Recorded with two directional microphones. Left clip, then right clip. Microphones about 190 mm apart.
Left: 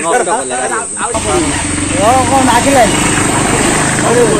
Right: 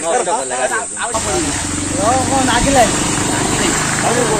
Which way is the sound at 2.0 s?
30° left (ahead or behind).